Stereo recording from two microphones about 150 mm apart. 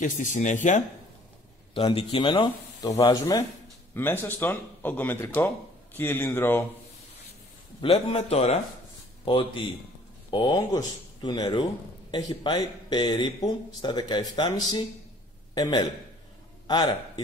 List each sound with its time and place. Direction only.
0.0 s speech: 60° left (ahead or behind)
1.7 s speech: 40° left (ahead or behind)
3.9 s speech: 15° left (ahead or behind)
7.8 s a man's voice: 40° left (ahead or behind)
9.2 s a man's voice: 35° left (ahead or behind)